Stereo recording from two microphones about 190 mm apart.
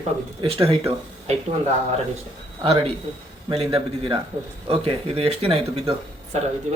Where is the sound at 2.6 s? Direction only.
30° right (ahead or behind).